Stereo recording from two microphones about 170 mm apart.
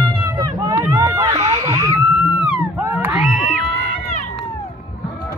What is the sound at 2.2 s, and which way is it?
Wail, 10° right (ahead or behind).